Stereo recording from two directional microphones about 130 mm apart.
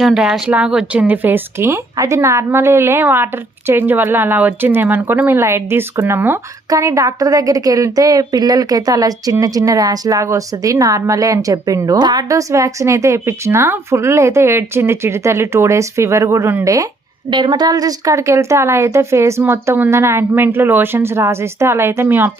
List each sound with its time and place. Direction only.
0.0 s a woman's voice: 5° right (ahead or behind); by 16.9 s 25° right (ahead or behind)
17.2 s a woman's voice: 40° right (ahead or behind); by 22.3 s 15° right (ahead or behind)